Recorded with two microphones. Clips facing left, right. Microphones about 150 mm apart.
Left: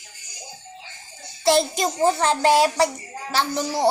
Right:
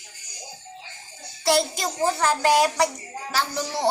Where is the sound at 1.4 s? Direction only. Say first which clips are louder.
Left 3 dB; 20° left (ahead or behind).